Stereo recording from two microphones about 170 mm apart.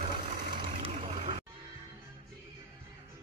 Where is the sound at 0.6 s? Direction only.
35° right (ahead or behind).